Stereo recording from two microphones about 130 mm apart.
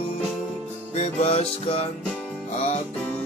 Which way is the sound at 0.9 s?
55° left (ahead or behind).